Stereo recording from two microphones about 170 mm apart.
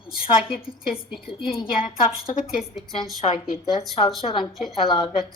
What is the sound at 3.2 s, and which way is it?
Speech, 40° left (ahead or behind).